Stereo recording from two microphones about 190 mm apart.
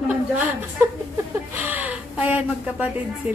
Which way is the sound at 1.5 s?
10° right (ahead or behind).